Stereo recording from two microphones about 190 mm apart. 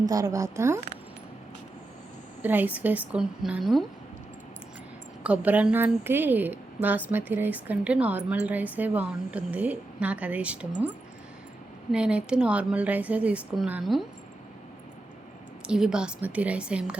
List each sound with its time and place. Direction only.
0.0 s a woman's voice: 20° right (ahead or behind)
2.4 s a woman's voice: 10° right (ahead or behind)
5.2 s a woman's voice: 5° right (ahead or behind)
11.9 s a woman's voice: 5° right (ahead or behind)
15.6 s a woman's voice: 5° right (ahead or behind)